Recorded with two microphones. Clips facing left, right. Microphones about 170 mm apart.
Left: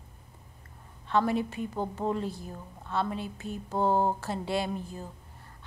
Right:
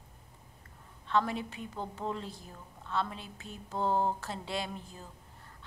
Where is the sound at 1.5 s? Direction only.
45° left (ahead or behind).